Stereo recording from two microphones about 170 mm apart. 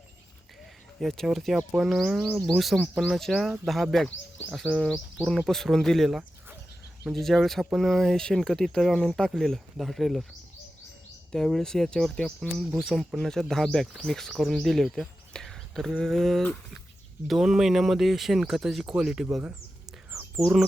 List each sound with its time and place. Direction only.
0.9 s speech: centre (ahead or behind)
11.3 s speech: centre (ahead or behind)